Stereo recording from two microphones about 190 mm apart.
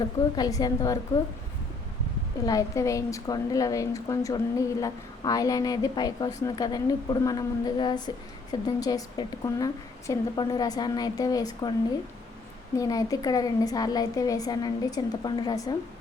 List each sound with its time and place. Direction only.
0.3 s a woman's voice: 20° left (ahead or behind)
2.5 s a woman's voice: 15° left (ahead or behind)
12.7 s a woman's voice: 20° left (ahead or behind)